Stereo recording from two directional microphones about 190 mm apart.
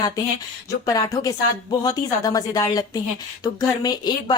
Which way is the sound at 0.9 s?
20° left (ahead or behind).